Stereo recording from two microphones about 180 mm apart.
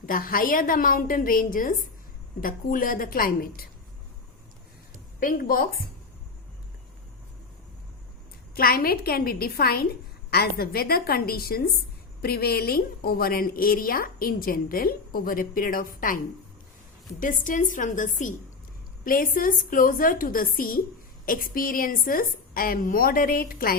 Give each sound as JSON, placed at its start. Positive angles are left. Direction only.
{"t": 0.0, "sound": "a woman's voice", "side_deg": 50}
{"t": 5.2, "sound": "a woman's voice", "side_deg": 50}
{"t": 8.5, "sound": "a woman's voice", "side_deg": 55}
{"t": 17.2, "sound": "a woman's voice", "side_deg": 45}